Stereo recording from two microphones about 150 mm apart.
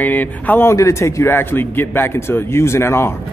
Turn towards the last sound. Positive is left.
turn(degrees=15)  # may be behind; listen again after turning